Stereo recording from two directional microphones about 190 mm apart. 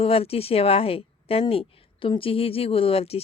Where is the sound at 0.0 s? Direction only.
30° left (ahead or behind).